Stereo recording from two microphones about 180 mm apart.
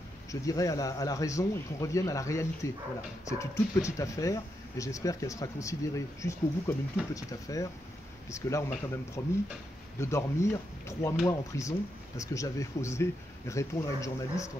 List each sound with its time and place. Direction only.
0.3 s speech: 20° left (ahead or behind)